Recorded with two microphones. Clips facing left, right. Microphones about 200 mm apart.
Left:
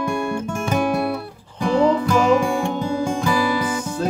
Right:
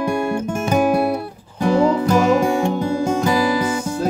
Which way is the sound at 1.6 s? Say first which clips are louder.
Right 1 dB; 40° right (ahead or behind).